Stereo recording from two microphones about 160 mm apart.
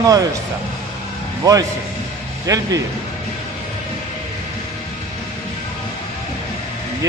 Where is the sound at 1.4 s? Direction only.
20° right (ahead or behind).